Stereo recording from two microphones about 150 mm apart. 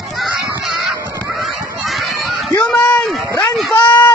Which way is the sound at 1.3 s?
Centre (ahead or behind).